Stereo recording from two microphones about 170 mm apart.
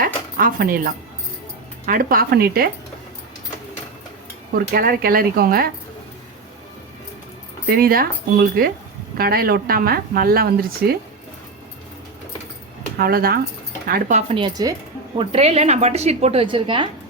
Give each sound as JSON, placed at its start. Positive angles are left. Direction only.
{"t": 0.0, "sound": "speech", "side_deg": -55}
{"t": 4.5, "sound": "speech", "side_deg": -60}
{"t": 7.7, "sound": "speech", "side_deg": -60}
{"t": 13.0, "sound": "speech", "side_deg": -60}
{"t": 14.2, "sound": "speech", "side_deg": -35}
{"t": 15.2, "sound": "a woman's voice", "side_deg": -35}